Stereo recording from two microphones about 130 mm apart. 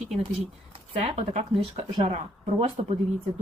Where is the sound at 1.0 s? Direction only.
50° right (ahead or behind).